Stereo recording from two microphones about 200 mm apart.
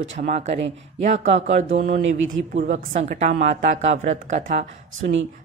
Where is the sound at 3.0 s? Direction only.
40° right (ahead or behind).